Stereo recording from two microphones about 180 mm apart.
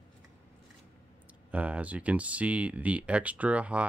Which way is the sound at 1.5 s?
10° right (ahead or behind).